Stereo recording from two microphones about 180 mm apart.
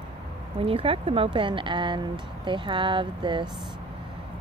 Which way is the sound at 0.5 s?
30° right (ahead or behind).